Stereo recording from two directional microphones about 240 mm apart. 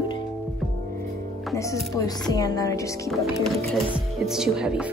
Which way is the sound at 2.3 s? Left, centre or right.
Centre.